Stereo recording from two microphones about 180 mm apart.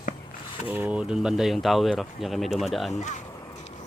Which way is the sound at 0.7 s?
10° right (ahead or behind).